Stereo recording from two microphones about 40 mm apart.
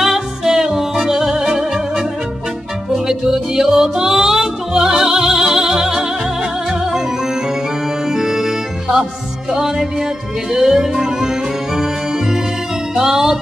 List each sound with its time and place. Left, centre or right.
0.0 s music: centre
3.1 s music: centre
8.1 s organ: centre
9.5 s music: centre